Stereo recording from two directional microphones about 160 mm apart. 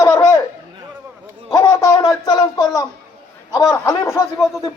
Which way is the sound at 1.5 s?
25° left (ahead or behind).